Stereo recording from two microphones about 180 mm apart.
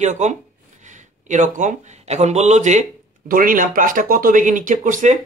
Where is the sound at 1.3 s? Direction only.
45° right (ahead or behind).